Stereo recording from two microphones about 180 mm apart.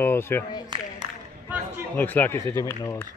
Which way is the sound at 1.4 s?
10° right (ahead or behind).